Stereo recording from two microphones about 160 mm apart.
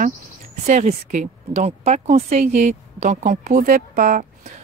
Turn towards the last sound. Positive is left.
turn(degrees=-60)  # may be behind; listen again after turning